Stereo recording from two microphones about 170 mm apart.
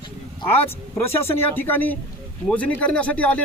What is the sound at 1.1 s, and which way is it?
Speech, 10° left (ahead or behind).